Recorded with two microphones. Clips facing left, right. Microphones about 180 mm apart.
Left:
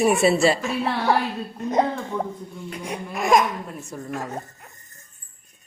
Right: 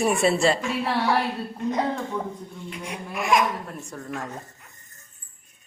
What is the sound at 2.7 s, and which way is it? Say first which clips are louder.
Crying: left 3 dB; 40° left (ahead or behind).